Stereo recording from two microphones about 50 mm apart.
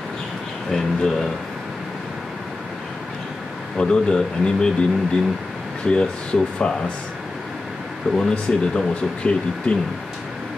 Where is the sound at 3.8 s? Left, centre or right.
Centre.